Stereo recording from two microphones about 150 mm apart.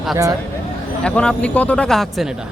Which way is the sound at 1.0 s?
5° left (ahead or behind).